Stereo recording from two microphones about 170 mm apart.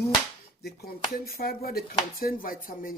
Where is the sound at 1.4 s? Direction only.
60° left (ahead or behind).